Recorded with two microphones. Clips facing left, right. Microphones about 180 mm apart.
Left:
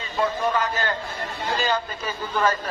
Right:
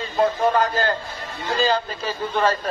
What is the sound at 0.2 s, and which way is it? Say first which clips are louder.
A man's voice: right 4 dB; 35° right (ahead or behind).